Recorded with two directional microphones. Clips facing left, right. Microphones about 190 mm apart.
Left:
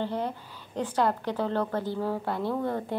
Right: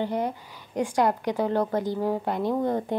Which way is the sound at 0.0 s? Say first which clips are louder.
Right 3 dB; 15° right (ahead or behind).